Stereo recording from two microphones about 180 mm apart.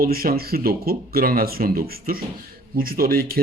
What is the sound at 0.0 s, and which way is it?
Speech, 55° right (ahead or behind).